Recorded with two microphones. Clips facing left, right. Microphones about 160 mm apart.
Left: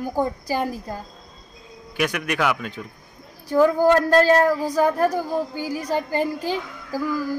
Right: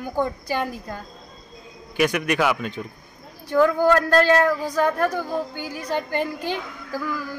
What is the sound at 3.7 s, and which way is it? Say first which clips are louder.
A woman's voice: left 2 dB; 30° left (ahead or behind).